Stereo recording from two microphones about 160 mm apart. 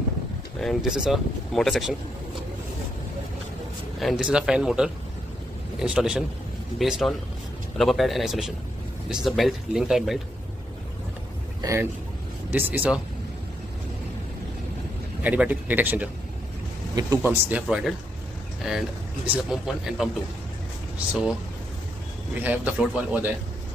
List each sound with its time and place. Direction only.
0.6 s speech: centre (ahead or behind)
4.0 s a man's voice: centre (ahead or behind)
11.6 s a man's voice: 20° right (ahead or behind)
15.2 s a man's voice: 10° right (ahead or behind)
17.2 s a man's voice: 10° right (ahead or behind)
21.1 s speech: 5° right (ahead or behind)
22.4 s a man's voice: 10° right (ahead or behind)